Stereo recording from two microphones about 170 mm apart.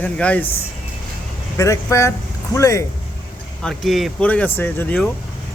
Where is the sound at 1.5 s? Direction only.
20° left (ahead or behind).